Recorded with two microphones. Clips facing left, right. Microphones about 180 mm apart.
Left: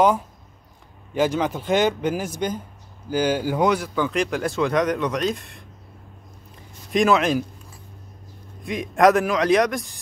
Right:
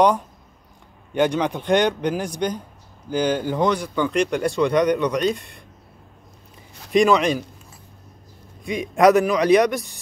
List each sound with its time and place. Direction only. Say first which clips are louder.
1.1 s speech: right 1 dB; centre (ahead or behind)
6.9 s speech: right 2 dB; centre (ahead or behind)
8.6 s speech: right 1 dB; centre (ahead or behind)